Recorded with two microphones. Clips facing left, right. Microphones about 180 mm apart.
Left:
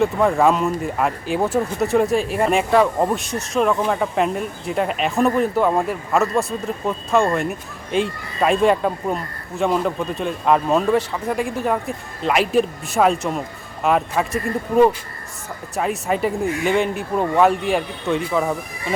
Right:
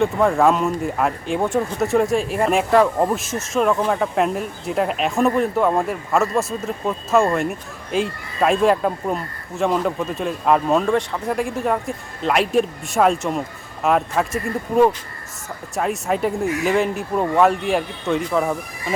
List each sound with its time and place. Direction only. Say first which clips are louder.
0.0 s speech: even; centre (ahead or behind)
15.7 s speech: even; centre (ahead or behind)